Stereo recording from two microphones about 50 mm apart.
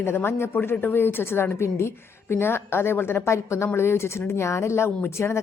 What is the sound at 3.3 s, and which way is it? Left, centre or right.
Speech, left.